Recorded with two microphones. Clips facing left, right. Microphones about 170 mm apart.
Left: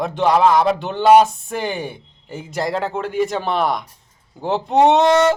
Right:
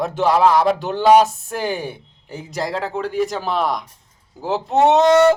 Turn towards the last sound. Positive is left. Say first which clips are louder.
# right 1 dB
turn(degrees=0)  # may be behind; listen again after turning